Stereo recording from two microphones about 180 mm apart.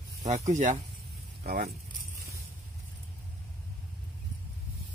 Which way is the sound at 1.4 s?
55° right (ahead or behind).